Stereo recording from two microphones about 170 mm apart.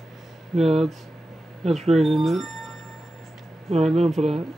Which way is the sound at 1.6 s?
40° right (ahead or behind).